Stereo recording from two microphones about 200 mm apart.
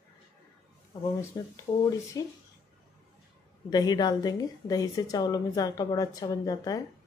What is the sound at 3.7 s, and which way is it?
Speech, 20° left (ahead or behind).